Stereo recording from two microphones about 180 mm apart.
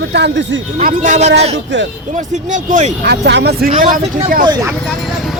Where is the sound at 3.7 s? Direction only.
35° right (ahead or behind).